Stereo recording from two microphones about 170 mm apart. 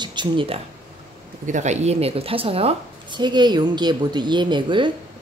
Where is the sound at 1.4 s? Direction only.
45° right (ahead or behind).